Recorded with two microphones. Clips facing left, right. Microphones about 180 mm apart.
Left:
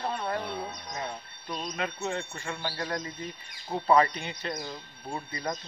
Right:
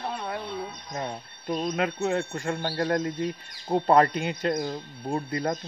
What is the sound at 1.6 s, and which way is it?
Speech, 50° right (ahead or behind).